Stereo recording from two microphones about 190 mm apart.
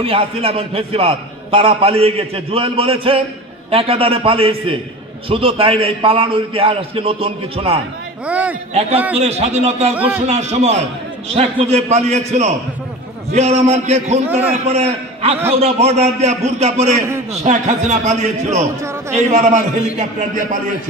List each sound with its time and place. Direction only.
0.0 s a man's voice: 30° right (ahead or behind)
8.3 s a man's voice: 5° right (ahead or behind)
9.2 s a man's voice: 35° right (ahead or behind)
9.9 s a man's voice: 10° right (ahead or behind)
10.2 s a man's voice: 35° right (ahead or behind)
14.2 s a man's voice: 10° right (ahead or behind)
14.6 s a man's voice: 35° right (ahead or behind)